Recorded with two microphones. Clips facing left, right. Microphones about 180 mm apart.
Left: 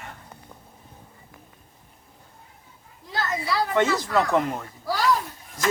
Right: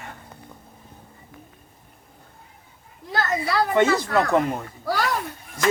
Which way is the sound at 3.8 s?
60° right (ahead or behind).